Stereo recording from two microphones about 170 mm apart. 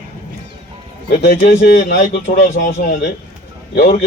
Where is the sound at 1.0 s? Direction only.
70° left (ahead or behind).